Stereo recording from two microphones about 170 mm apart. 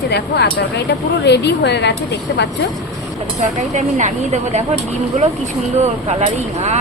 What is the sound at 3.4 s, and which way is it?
Speech, 45° right (ahead or behind).